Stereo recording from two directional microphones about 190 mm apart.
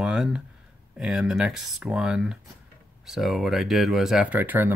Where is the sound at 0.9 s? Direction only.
Centre (ahead or behind).